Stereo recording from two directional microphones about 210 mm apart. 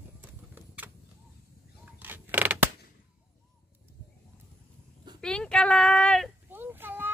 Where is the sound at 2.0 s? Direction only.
10° right (ahead or behind).